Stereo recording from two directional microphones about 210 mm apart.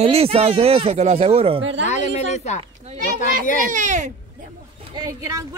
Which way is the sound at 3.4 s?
40° left (ahead or behind).